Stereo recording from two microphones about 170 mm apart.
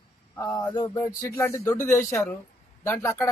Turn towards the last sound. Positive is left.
turn(degrees=15)  # may be behind; listen again after turning